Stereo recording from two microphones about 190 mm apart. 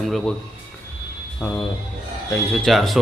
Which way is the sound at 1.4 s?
10° left (ahead or behind).